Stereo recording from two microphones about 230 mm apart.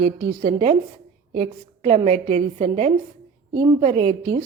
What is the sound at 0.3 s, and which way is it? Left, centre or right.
A woman's voice, right.